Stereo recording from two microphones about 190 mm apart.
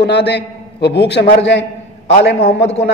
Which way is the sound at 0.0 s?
65° left (ahead or behind).